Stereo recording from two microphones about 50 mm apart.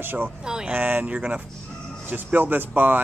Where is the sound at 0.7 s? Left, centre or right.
Right.